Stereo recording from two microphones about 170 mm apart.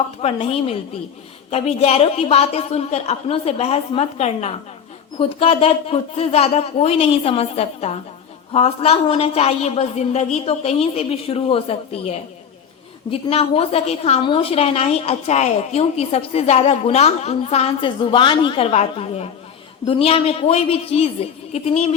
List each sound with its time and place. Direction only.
0.2 s a woman's voice: 35° left (ahead or behind)